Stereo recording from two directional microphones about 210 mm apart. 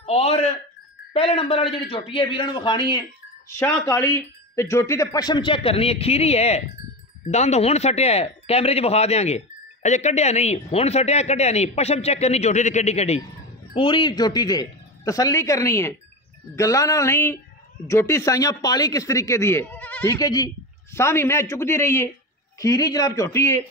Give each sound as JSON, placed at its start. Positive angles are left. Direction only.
{"t": 0.0, "sound": "speech", "side_deg": 30}